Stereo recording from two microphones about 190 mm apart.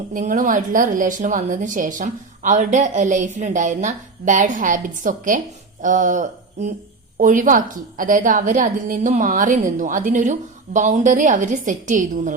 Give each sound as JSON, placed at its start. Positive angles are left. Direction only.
{"t": 0.1, "sound": "a woman's voice", "side_deg": -45}